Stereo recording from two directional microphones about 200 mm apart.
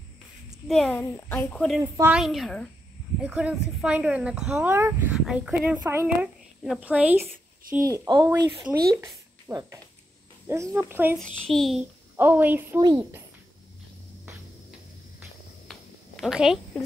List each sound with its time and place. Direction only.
0.7 s speech: 5° left (ahead or behind)
1.8 s speech: 15° right (ahead or behind)
2.1 s speech: centre (ahead or behind)
11.4 s speech: centre (ahead or behind)
12.2 s speech: 10° right (ahead or behind)
15.7 s a sound: centre (ahead or behind)